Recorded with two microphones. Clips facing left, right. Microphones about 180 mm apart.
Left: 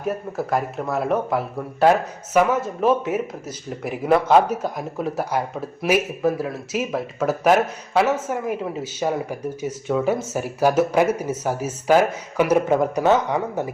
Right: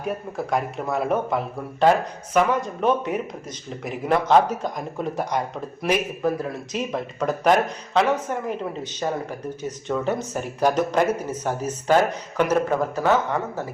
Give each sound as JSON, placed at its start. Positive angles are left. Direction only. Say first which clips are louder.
{"t": 0.0, "sound": "speech", "louder": "left 2 dB", "side_deg": 0}